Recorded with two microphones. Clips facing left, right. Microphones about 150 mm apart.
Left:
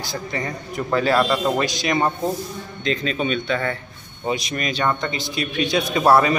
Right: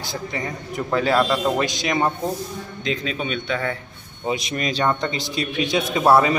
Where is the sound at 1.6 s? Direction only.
15° right (ahead or behind).